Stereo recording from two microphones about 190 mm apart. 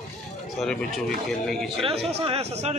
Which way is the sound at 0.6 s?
5° left (ahead or behind).